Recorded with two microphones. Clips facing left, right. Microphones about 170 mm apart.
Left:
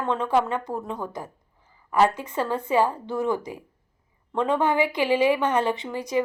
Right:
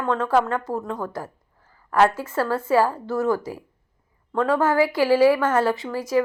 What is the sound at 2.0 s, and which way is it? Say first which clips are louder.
A woman's voice: right 2 dB; 15° left (ahead or behind).